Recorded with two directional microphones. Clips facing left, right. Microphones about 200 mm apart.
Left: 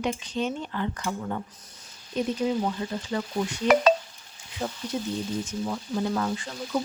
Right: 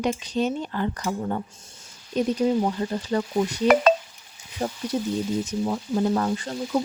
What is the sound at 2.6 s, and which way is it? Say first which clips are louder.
Speech: right 4 dB; 40° right (ahead or behind).